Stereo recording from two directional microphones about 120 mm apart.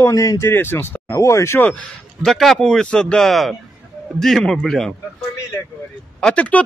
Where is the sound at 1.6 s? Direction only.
10° left (ahead or behind).